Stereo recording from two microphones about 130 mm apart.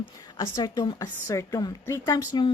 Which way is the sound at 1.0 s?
25° left (ahead or behind).